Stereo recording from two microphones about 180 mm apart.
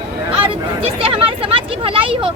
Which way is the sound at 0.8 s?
30° right (ahead or behind).